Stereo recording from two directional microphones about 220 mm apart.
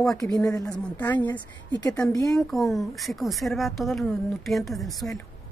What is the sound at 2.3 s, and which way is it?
A woman's voice, centre (ahead or behind).